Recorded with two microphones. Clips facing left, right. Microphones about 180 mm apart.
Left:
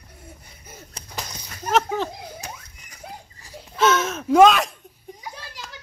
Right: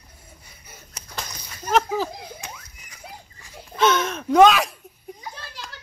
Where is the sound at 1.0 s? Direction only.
30° left (ahead or behind).